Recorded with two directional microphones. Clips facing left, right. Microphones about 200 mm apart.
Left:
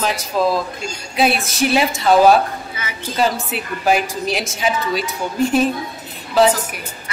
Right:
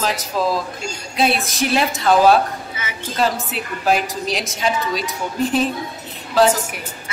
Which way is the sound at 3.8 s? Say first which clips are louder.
Left 1 dB; 5° left (ahead or behind).